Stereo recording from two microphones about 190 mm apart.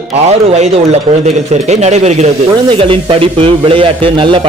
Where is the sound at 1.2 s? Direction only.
35° right (ahead or behind).